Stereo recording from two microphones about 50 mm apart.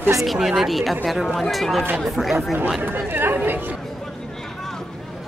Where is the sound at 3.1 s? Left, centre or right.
Right.